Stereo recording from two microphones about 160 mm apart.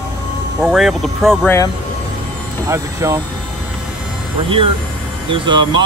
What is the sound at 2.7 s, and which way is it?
Speech, 20° right (ahead or behind).